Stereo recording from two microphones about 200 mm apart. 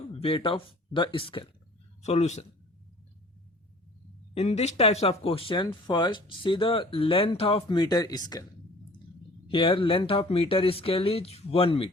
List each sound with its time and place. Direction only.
0.2 s speech: 25° left (ahead or behind)
4.4 s speech: 30° left (ahead or behind)
9.5 s speech: 25° left (ahead or behind)